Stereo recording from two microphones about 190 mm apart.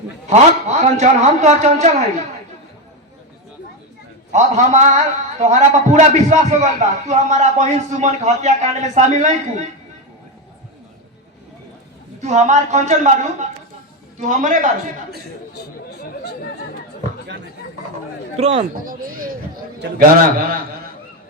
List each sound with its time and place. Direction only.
0.3 s a man's voice: 35° right (ahead or behind)
4.3 s a man's voice: 40° right (ahead or behind)
12.2 s a man's voice: 35° right (ahead or behind)
15.5 s speech: 55° left (ahead or behind)
18.3 s a man's voice: 30° right (ahead or behind)
18.7 s speech: 50° right (ahead or behind)